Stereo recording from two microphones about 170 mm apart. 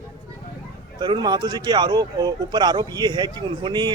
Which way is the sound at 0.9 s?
25° right (ahead or behind).